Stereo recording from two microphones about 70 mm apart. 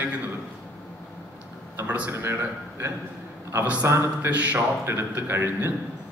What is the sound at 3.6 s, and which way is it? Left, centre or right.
Speech, centre.